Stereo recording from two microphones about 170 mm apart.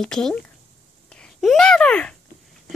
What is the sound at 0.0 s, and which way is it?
A child's voice, 5° left (ahead or behind).